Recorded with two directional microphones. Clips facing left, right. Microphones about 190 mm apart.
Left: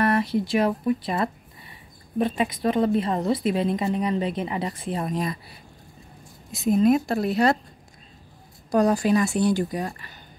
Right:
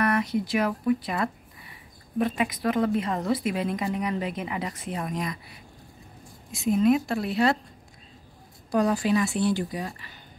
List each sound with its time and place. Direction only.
0.0 s a woman's voice: 30° left (ahead or behind)
8.7 s a woman's voice: 40° left (ahead or behind)